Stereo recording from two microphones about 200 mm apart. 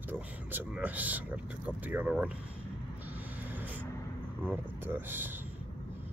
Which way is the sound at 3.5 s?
10° right (ahead or behind).